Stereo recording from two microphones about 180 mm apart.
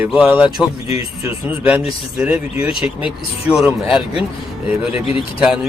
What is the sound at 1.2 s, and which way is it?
Speech, 5° right (ahead or behind).